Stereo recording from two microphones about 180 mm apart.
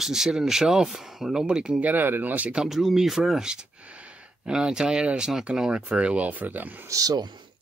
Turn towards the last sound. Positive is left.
turn(degrees=-20)  # may be behind; listen again after turning